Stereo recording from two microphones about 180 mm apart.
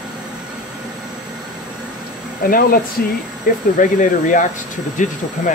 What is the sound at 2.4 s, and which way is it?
Speech, 55° left (ahead or behind).